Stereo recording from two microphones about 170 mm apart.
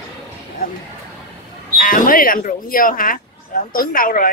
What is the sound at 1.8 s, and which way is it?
Speech, 55° left (ahead or behind).